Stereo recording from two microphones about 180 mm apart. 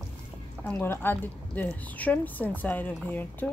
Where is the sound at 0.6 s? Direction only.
10° left (ahead or behind).